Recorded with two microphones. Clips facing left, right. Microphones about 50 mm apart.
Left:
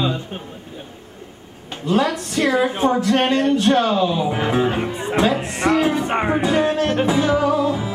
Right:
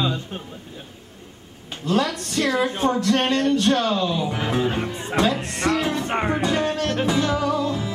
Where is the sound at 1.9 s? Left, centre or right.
Centre.